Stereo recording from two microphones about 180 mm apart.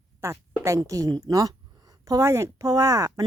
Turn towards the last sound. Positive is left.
turn(degrees=-20)  # may be behind; listen again after turning